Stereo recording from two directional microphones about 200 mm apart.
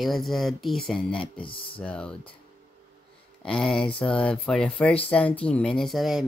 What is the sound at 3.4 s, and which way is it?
Speech, 5° left (ahead or behind).